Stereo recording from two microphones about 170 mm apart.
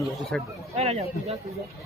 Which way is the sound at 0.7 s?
35° right (ahead or behind).